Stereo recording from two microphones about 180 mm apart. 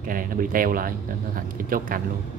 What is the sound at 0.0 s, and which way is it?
Speech, 50° right (ahead or behind).